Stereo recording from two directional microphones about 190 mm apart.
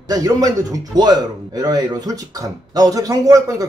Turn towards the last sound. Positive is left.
turn(degrees=-15)  # may be behind; listen again after turning